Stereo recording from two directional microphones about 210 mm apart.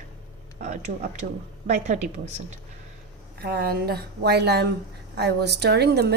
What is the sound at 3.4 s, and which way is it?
A woman's voice, 50° right (ahead or behind).